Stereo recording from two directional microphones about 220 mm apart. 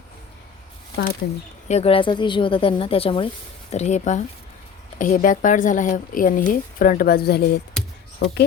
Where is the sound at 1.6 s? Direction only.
30° left (ahead or behind); by 8.4 s 55° left (ahead or behind).